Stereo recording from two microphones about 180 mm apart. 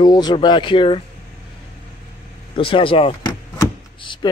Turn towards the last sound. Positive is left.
turn(degrees=25)  # may be behind; listen again after turning